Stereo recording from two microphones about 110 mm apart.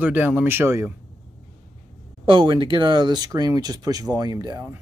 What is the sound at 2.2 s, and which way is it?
Speech, 45° right (ahead or behind).